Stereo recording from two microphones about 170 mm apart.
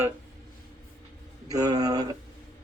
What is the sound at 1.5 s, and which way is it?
Speech, 20° right (ahead or behind).